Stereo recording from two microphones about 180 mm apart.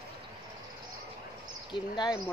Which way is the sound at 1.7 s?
25° left (ahead or behind).